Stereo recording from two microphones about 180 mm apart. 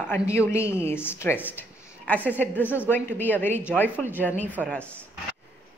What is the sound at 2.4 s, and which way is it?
A woman's voice, 10° left (ahead or behind).